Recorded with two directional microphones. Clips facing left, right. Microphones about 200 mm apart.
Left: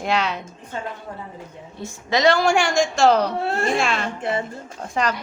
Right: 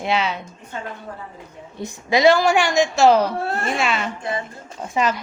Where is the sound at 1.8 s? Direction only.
15° right (ahead or behind).